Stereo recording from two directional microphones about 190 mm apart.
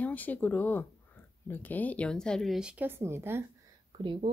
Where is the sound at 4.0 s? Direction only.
25° right (ahead or behind).